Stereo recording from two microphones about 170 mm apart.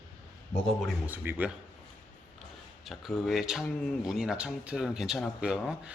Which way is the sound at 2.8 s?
Centre (ahead or behind).